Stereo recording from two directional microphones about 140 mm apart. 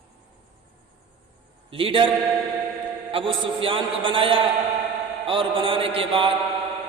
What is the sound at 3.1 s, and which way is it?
A man's voice, 40° right (ahead or behind).